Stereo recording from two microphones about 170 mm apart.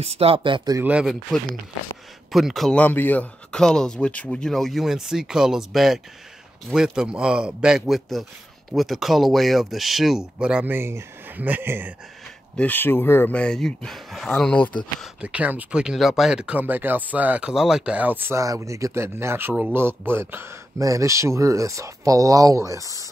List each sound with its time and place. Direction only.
0.0 s speech: 35° right (ahead or behind)
0.7 s speech: 10° right (ahead or behind)
12.5 s speech: 10° left (ahead or behind)
15.0 s speech: 10° right (ahead or behind)